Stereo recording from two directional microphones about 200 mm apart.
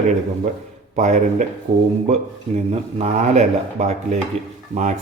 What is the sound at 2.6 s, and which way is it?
Dishes, 35° right (ahead or behind).